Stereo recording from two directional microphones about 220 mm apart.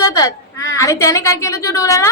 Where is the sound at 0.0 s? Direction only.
15° left (ahead or behind).